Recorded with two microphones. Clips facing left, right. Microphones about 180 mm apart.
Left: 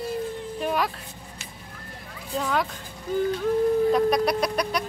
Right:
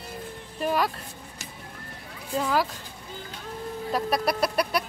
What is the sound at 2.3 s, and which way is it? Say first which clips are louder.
Speech: right 1 dB; 5° right (ahead or behind).